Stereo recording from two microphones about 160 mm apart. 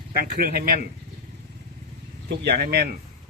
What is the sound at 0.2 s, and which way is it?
Speech, 65° right (ahead or behind).